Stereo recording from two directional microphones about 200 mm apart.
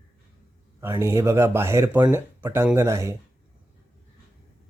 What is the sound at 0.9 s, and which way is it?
Speech, 15° right (ahead or behind).